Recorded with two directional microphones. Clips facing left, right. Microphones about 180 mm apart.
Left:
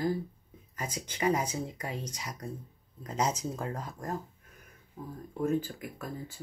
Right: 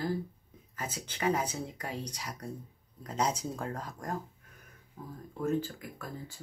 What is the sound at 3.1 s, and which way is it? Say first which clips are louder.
Speech: left 1 dB; 5° left (ahead or behind).